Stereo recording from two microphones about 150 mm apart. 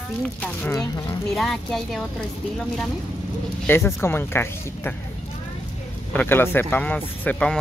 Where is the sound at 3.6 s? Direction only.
15° left (ahead or behind).